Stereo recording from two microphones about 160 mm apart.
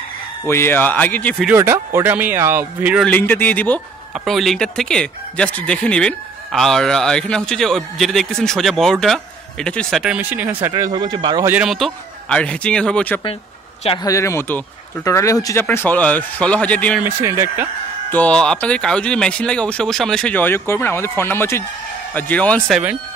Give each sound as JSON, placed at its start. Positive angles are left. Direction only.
{"t": 0.5, "sound": "speech", "side_deg": 15}
{"t": 1.5, "sound": "speech", "side_deg": -15}
{"t": 3.0, "sound": "speech", "side_deg": 10}
{"t": 4.1, "sound": "speech", "side_deg": 0}
{"t": 10.1, "sound": "speech", "side_deg": -10}
{"t": 11.4, "sound": "speech", "side_deg": -5}
{"t": 14.0, "sound": "speech", "side_deg": 20}
{"t": 17.0, "sound": "speech", "side_deg": -15}
{"t": 18.1, "sound": "speech", "side_deg": 10}